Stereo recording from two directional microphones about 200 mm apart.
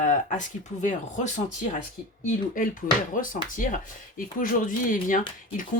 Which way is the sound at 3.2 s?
40° left (ahead or behind).